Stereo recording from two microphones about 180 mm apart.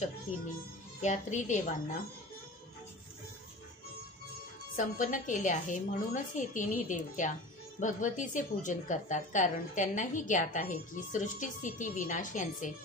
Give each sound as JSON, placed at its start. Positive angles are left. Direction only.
{"t": 1.0, "sound": "a woman's voice", "side_deg": 40}
{"t": 4.7, "sound": "a woman's voice", "side_deg": 45}